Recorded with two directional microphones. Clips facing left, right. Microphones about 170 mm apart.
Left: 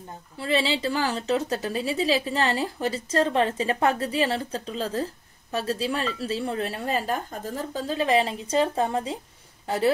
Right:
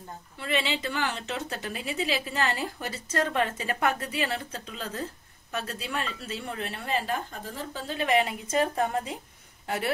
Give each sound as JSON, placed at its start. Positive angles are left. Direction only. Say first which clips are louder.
{"t": 0.4, "sound": "a woman's voice", "louder": "left 5 dB", "side_deg": 35}